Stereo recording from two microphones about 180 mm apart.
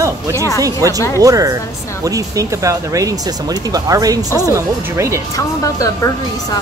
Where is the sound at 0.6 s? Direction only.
20° right (ahead or behind).